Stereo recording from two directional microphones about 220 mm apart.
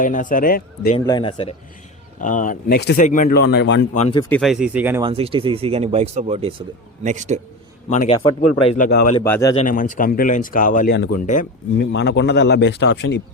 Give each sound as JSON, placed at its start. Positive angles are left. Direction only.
{"t": 0.0, "sound": "speech", "side_deg": 35}
{"t": 0.9, "sound": "speech", "side_deg": 20}
{"t": 2.2, "sound": "speech", "side_deg": 35}
{"t": 3.9, "sound": "speech", "side_deg": 30}
{"t": 4.2, "sound": "speech", "side_deg": 5}
{"t": 5.0, "sound": "a man's voice", "side_deg": -25}
{"t": 7.9, "sound": "speech", "side_deg": 30}
{"t": 8.1, "sound": "speech", "side_deg": 20}
{"t": 8.8, "sound": "speech", "side_deg": 50}
{"t": 9.2, "sound": "speech", "side_deg": 10}
{"t": 9.6, "sound": "speech", "side_deg": 35}
{"t": 11.9, "sound": "speech", "side_deg": 50}